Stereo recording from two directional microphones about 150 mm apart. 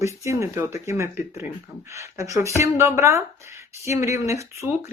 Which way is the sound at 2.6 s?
20° right (ahead or behind).